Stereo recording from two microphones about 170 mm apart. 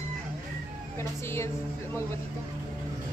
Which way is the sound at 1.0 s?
15° left (ahead or behind).